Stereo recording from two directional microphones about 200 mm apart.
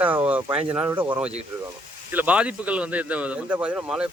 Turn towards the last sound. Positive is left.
turn(degrees=-5)  # may be behind; listen again after turning